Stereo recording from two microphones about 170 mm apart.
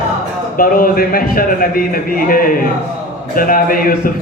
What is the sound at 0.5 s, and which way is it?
A man's voice, 60° left (ahead or behind).